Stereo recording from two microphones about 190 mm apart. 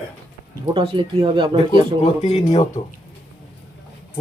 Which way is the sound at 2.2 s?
35° left (ahead or behind).